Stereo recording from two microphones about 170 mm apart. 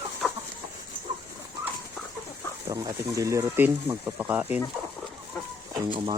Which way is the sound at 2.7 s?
20° right (ahead or behind).